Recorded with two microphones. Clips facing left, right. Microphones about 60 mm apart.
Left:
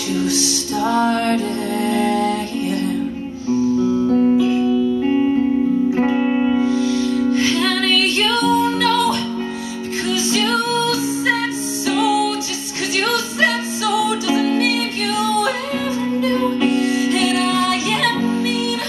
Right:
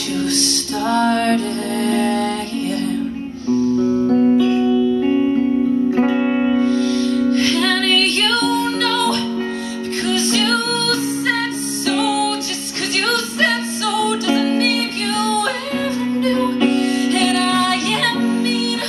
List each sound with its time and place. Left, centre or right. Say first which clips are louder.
0.1 s music: left 1 dB; centre
3.4 s music: right 1 dB; centre
4.6 s music: right 1 dB; centre
5.0 s music: even; centre
6.1 s music: even; centre
6.6 s music: right 1 dB; centre